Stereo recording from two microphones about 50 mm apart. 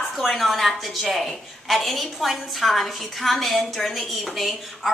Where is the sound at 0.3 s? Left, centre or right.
Centre.